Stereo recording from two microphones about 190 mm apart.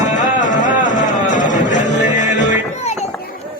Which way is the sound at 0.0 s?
40° left (ahead or behind).